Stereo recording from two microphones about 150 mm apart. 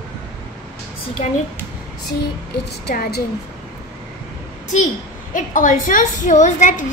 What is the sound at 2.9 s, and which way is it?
Speech, 90° left.